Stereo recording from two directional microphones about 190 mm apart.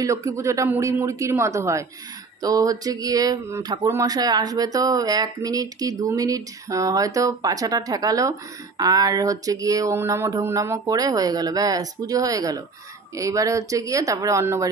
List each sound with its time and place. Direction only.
0.0 s speech: 15° right (ahead or behind)